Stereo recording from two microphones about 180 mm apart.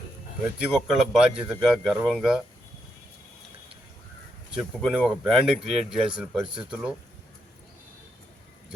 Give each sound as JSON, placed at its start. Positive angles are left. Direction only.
{"t": 0.7, "sound": "speech", "side_deg": -5}
{"t": 4.5, "sound": "speech", "side_deg": 0}
{"t": 6.4, "sound": "speech", "side_deg": -25}
{"t": 6.7, "sound": "speech", "side_deg": -5}